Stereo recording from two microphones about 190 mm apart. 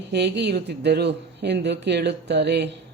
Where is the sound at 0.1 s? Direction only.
60° right (ahead or behind).